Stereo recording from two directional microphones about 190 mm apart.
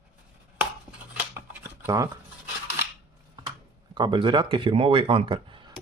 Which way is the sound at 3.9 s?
25° right (ahead or behind).